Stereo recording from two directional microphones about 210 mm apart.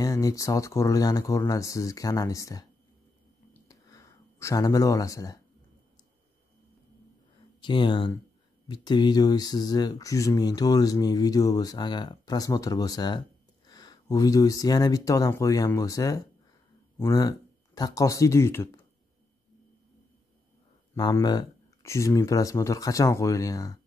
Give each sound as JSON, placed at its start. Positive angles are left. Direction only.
{"t": 0.0, "sound": "speech", "side_deg": 15}
{"t": 3.5, "sound": "a sound", "side_deg": 15}
{"t": 7.6, "sound": "speech", "side_deg": 20}
{"t": 20.9, "sound": "speech", "side_deg": 15}